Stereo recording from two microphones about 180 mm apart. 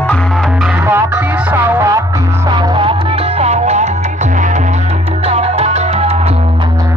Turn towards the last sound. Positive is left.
turn(degrees=-35)  # may be behind; listen again after turning